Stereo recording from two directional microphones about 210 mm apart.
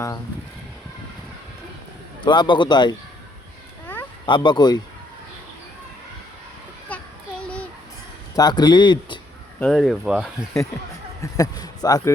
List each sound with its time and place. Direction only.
2.2 s speech: 20° left (ahead or behind)
4.3 s speech: 20° left (ahead or behind)
6.8 s a sound: 5° left (ahead or behind)
8.4 s speech: 20° left (ahead or behind)
9.6 s speech: centre (ahead or behind)
11.2 s a man's voice: 15° left (ahead or behind)